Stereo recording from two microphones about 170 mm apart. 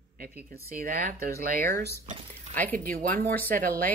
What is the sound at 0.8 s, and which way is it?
Speech, 55° right (ahead or behind).